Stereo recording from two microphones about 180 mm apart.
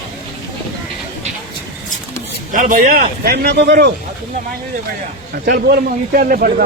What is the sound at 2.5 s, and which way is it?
Speech, 45° right (ahead or behind).